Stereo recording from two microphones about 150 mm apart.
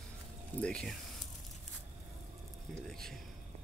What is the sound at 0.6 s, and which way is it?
Speech, 5° left (ahead or behind).